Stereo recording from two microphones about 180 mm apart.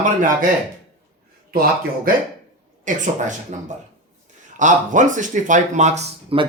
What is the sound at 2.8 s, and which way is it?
Speech, 45° right (ahead or behind).